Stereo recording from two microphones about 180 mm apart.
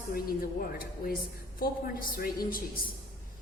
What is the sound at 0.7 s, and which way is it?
Speech, 55° left (ahead or behind).